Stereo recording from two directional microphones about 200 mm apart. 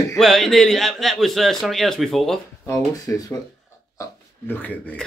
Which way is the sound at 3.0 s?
15° left (ahead or behind).